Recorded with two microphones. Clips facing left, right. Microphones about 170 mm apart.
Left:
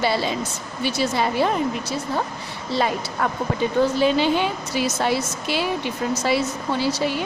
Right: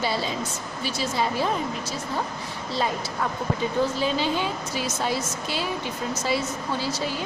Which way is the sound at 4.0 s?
70° left (ahead or behind).